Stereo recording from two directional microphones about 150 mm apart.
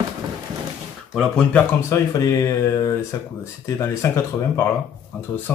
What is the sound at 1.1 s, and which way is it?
Speech, 5° left (ahead or behind).